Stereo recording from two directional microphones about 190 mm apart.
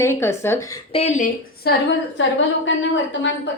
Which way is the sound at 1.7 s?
55° left (ahead or behind).